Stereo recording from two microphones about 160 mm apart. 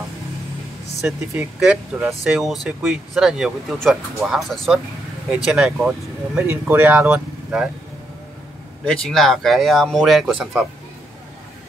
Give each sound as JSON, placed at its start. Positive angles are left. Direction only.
{"t": 1.0, "sound": "speech", "side_deg": -5}
{"t": 6.4, "sound": "speech", "side_deg": -15}
{"t": 8.8, "sound": "speech", "side_deg": 5}